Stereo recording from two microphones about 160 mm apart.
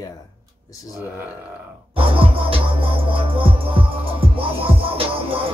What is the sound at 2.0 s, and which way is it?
Music, 35° right (ahead or behind).